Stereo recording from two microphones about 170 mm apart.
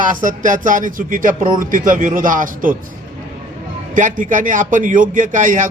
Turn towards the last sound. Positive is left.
turn(degrees=-50)  # may be behind; listen again after turning